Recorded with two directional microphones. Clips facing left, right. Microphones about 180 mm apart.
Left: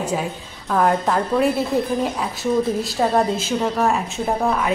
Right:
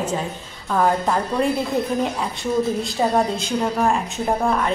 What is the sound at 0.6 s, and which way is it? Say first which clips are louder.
A woman's voice: left 1 dB; centre (ahead or behind).